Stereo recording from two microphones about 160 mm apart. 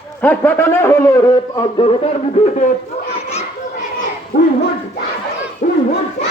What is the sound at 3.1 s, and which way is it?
Children playing, 40° left (ahead or behind).